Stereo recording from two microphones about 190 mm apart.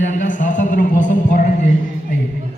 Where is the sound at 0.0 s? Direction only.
40° left (ahead or behind).